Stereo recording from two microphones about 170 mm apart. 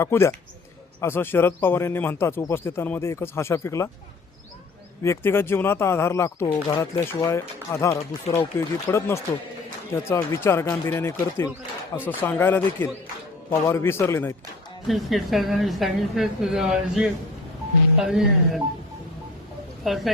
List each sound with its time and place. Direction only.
0.0 s speech: 15° left (ahead or behind)
5.0 s speech: 15° left (ahead or behind)
14.8 s a woman's voice: centre (ahead or behind)
19.9 s a woman's voice: centre (ahead or behind)